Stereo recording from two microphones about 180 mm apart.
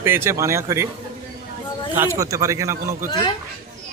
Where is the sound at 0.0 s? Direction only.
15° right (ahead or behind).